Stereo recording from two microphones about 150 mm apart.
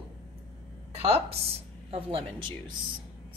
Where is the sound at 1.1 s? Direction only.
40° right (ahead or behind).